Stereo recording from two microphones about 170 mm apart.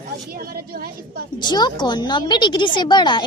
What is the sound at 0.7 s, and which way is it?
Speech, 60° right (ahead or behind).